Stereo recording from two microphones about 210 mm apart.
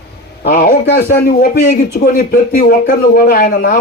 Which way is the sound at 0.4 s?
40° left (ahead or behind).